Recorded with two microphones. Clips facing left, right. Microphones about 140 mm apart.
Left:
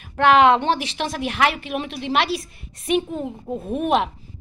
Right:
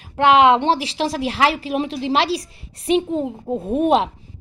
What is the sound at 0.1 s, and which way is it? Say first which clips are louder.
A woman's voice: right 1 dB; 25° right (ahead or behind).